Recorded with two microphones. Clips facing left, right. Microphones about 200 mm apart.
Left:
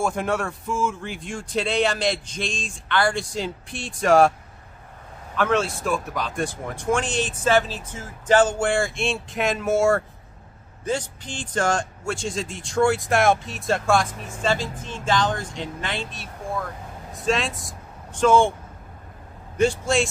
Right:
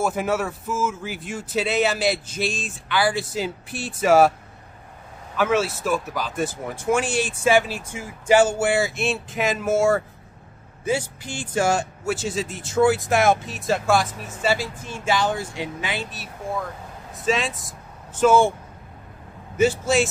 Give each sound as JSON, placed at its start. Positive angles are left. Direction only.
{"t": 0.0, "sound": "speech", "side_deg": -5}
{"t": 5.3, "sound": "speech", "side_deg": -5}
{"t": 19.5, "sound": "speech", "side_deg": -5}